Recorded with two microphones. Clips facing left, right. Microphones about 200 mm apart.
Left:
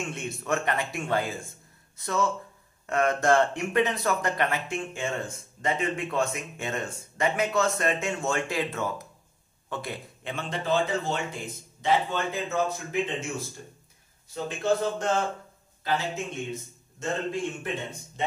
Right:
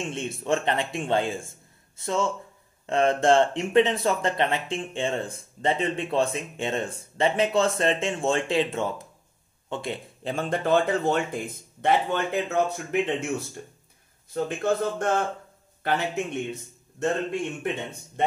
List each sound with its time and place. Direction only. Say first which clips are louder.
0.0 s speech: right 3 dB; 30° right (ahead or behind)
10.3 s a man's voice: right 4 dB; 50° right (ahead or behind)